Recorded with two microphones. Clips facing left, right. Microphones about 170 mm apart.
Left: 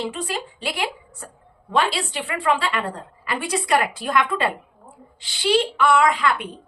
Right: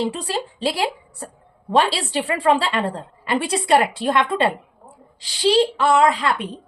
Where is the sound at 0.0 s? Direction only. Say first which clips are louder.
Right 4 dB; 35° right (ahead or behind).